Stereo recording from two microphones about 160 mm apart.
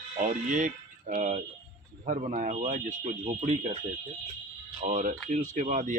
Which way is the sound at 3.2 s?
40° right (ahead or behind).